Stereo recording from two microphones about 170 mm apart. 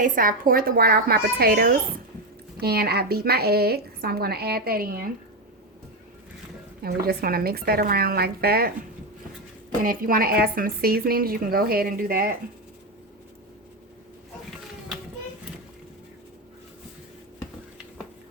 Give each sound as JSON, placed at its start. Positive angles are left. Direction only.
{"t": 0.0, "sound": "speech", "side_deg": -55}
{"t": 6.8, "sound": "speech", "side_deg": -65}
{"t": 9.8, "sound": "speech", "side_deg": -55}